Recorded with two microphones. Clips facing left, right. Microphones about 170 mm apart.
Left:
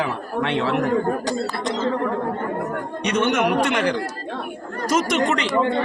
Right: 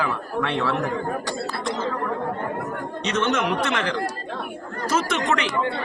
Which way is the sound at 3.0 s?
10° left (ahead or behind).